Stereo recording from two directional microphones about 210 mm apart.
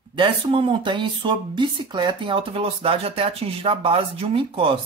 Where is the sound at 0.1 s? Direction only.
25° right (ahead or behind).